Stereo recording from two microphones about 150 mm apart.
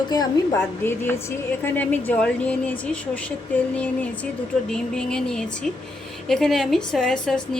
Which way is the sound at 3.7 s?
10° left (ahead or behind).